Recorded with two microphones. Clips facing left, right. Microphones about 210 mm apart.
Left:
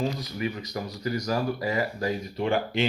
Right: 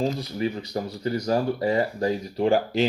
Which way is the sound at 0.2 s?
30° right (ahead or behind).